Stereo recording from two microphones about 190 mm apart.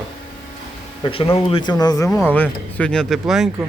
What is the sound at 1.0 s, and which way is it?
Speech, 30° left (ahead or behind).